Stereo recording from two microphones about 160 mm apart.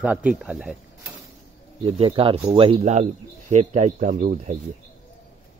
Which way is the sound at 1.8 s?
35° right (ahead or behind).